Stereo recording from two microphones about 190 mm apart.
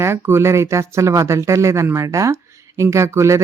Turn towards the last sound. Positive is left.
turn(degrees=-15)  # may be behind; listen again after turning